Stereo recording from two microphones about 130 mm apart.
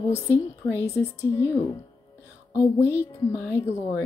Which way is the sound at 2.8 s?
20° left (ahead or behind).